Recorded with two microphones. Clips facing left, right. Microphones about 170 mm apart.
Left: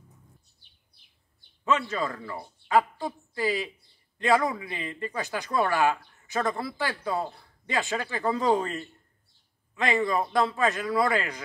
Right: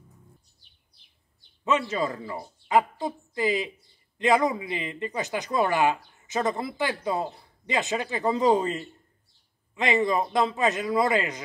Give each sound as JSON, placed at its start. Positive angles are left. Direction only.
{"t": 1.6, "sound": "a woman's voice", "side_deg": -20}